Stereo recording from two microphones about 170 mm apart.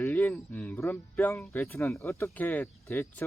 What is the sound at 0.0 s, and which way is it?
Speech, 10° left (ahead or behind).